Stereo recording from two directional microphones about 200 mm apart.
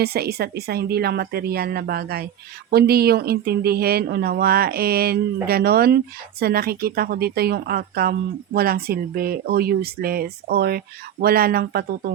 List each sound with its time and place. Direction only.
0.0 s speech: 50° right (ahead or behind)